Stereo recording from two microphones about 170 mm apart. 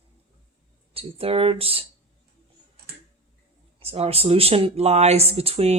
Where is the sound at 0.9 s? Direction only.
35° right (ahead or behind).